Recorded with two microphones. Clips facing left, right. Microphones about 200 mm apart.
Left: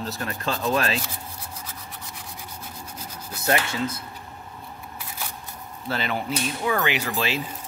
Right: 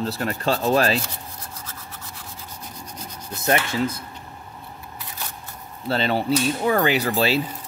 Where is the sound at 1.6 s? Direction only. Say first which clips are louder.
Even; 10° left (ahead or behind).